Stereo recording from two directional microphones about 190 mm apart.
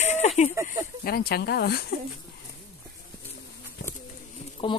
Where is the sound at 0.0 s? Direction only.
35° left (ahead or behind).